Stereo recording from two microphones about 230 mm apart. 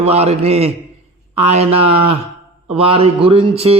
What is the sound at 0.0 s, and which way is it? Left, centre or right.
Speech, right.